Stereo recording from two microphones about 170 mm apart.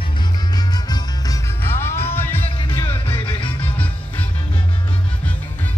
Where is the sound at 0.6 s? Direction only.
25° left (ahead or behind).